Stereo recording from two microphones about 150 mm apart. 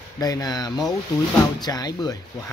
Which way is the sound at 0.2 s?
25° left (ahead or behind).